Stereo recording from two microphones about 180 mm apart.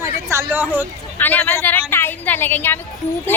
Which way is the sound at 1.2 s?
10° left (ahead or behind).